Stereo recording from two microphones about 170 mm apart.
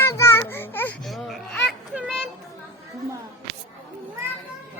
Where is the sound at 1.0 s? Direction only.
Centre (ahead or behind).